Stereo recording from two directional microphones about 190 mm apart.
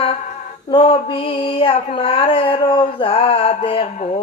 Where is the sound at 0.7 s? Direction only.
30° left (ahead or behind).